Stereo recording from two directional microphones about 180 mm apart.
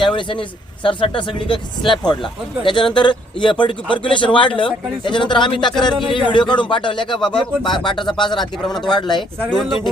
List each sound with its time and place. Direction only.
0.0 s speech: 25° left (ahead or behind)
5.9 s speech: centre (ahead or behind)
6.3 s speech: 25° left (ahead or behind)
8.7 s speech: centre (ahead or behind)
9.0 s speech: 25° left (ahead or behind)
9.5 s speech: centre (ahead or behind)